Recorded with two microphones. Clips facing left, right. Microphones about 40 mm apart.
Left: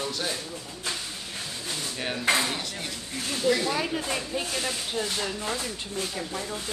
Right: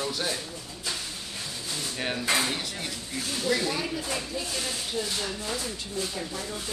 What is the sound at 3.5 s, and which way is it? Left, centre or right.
Speech, left.